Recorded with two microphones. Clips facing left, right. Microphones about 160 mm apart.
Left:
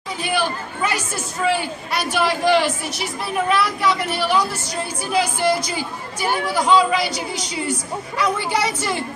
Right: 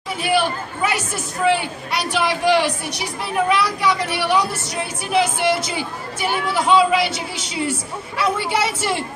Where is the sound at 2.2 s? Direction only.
15° right (ahead or behind).